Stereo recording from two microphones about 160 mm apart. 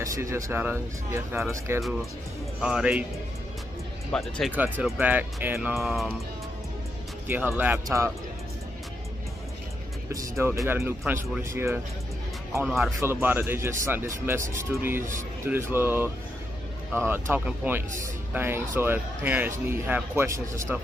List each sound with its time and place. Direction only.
0.0 s speech: 20° right (ahead or behind)
1.8 s speech: centre (ahead or behind)
4.1 s speech: centre (ahead or behind)
4.5 s speech: 10° right (ahead or behind)
7.2 s speech: 10° right (ahead or behind)
10.1 s speech: 20° right (ahead or behind)
12.6 s speech: centre (ahead or behind)
13.0 s speech: 15° right (ahead or behind)